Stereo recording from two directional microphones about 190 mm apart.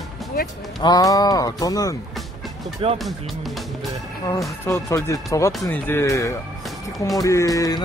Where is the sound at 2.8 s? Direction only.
30° right (ahead or behind).